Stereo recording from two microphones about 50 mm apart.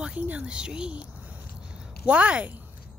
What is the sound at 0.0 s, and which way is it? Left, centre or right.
Speech, right.